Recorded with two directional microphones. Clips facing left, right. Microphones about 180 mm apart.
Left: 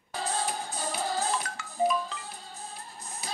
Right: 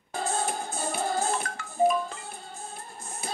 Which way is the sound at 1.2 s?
50° right (ahead or behind).